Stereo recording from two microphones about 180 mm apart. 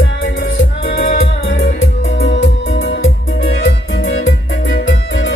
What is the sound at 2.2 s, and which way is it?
Music, 85° left.